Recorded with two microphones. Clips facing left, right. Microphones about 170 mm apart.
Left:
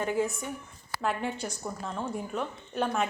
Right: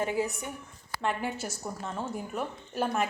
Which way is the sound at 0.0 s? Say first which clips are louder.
Left 1 dB; 5° right (ahead or behind).